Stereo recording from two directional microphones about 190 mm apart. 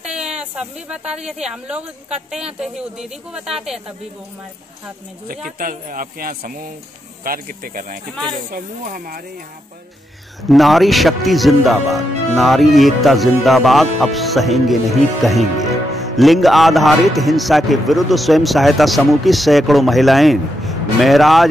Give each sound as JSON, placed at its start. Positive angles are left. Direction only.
{"t": 0.0, "sound": "a man's voice", "side_deg": -5}
{"t": 5.6, "sound": "speech", "side_deg": -45}
{"t": 10.5, "sound": "a man's voice", "side_deg": 0}